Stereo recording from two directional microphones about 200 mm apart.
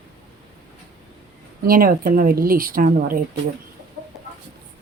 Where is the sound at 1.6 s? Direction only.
45° right (ahead or behind).